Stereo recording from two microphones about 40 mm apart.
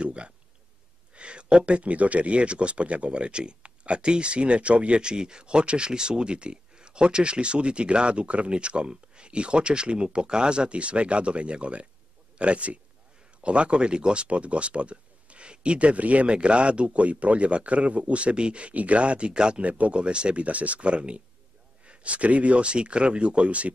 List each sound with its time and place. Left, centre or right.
0.0 s a sound: right
1.1 s a man's voice: right
19.6 s speech: right